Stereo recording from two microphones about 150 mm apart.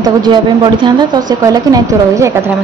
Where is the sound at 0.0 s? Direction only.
30° right (ahead or behind).